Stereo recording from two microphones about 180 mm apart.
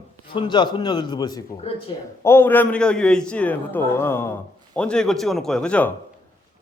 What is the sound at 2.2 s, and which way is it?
A man's voice, 15° left (ahead or behind).